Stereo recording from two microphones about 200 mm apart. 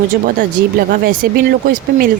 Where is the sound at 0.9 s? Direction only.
50° right (ahead or behind).